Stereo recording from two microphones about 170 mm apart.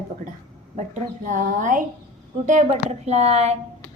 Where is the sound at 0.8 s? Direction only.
50° right (ahead or behind).